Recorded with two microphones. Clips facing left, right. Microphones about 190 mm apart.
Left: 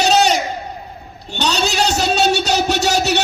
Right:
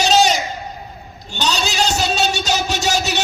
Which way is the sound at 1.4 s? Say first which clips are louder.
Left 2 dB; 60° left (ahead or behind).